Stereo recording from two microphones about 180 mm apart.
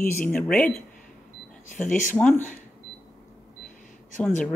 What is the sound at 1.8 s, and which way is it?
Speech, 45° left (ahead or behind).